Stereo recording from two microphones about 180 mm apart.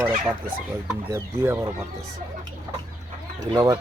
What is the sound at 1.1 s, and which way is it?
Speech, 15° right (ahead or behind).